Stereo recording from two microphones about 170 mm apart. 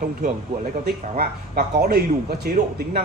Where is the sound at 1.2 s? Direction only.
65° right (ahead or behind).